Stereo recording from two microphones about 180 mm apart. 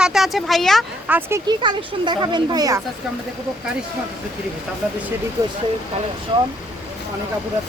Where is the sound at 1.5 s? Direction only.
25° right (ahead or behind).